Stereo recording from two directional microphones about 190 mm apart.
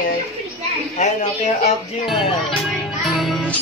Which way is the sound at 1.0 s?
40° left (ahead or behind).